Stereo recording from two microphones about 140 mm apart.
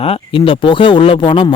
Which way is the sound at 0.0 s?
40° left (ahead or behind).